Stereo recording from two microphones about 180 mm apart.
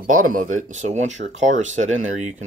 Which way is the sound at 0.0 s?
45° right (ahead or behind).